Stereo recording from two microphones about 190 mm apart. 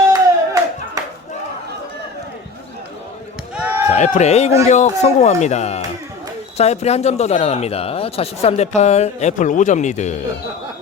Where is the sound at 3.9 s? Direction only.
40° left (ahead or behind).